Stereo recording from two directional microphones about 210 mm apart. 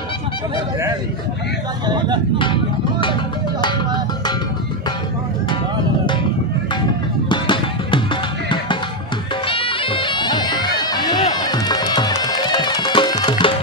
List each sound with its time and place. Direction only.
1.9 s speech: 20° right (ahead or behind)
2.3 s speech: 25° left (ahead or behind)
7.2 s music: 20° left (ahead or behind)
9.5 s music: 25° left (ahead or behind)